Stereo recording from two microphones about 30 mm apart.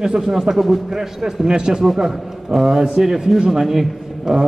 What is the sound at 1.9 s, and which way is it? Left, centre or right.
Speech, centre.